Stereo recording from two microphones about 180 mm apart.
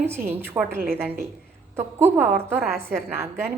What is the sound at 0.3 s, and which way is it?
A woman's voice, 10° right (ahead or behind).